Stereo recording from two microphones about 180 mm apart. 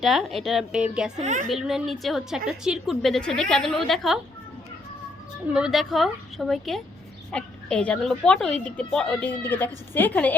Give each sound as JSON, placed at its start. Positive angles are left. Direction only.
{"t": 0.0, "sound": "a woman's voice", "side_deg": 0}
{"t": 1.2, "sound": "a woman's voice", "side_deg": -40}
{"t": 1.5, "sound": "a woman's voice", "side_deg": 0}
{"t": 5.5, "sound": "a woman's voice", "side_deg": -5}